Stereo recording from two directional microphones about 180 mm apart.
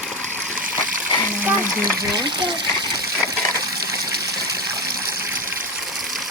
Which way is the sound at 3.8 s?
65° right (ahead or behind).